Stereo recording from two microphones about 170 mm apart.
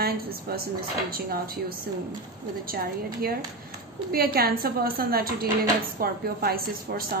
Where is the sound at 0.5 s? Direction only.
65° right (ahead or behind).